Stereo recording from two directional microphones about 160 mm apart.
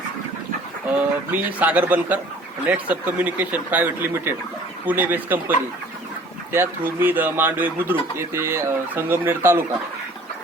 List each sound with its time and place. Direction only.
0.9 s speech: 10° right (ahead or behind)
6.5 s speech: 15° right (ahead or behind)